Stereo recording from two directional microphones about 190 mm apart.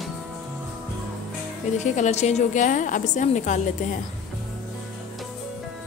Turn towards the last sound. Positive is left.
turn(degrees=40)  # may be behind; listen again after turning